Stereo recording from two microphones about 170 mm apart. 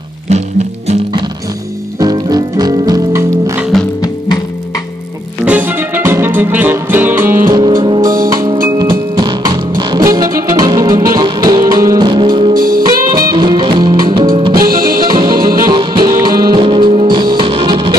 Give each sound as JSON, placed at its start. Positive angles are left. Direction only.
{"t": 0.3, "sound": "music", "side_deg": -40}
{"t": 2.0, "sound": "music", "side_deg": -20}
{"t": 5.4, "sound": "music", "side_deg": -10}
{"t": 7.4, "sound": "music", "side_deg": -25}
{"t": 12.5, "sound": "music", "side_deg": -60}
{"t": 13.1, "sound": "music", "side_deg": -25}